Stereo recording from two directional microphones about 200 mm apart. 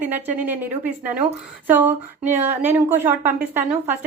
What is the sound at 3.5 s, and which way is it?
Speech, 35° right (ahead or behind).